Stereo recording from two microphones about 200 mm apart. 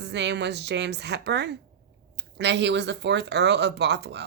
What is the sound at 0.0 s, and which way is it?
Speech, 60° right (ahead or behind).